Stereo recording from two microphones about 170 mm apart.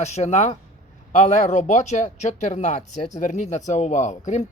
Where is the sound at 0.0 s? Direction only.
40° left (ahead or behind).